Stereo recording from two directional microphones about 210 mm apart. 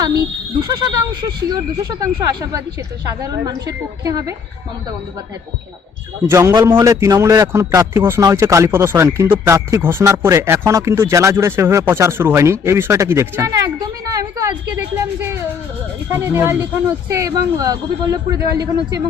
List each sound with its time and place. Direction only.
0.6 s a man's voice: 15° right (ahead or behind)
6.2 s a man's voice: 15° right (ahead or behind)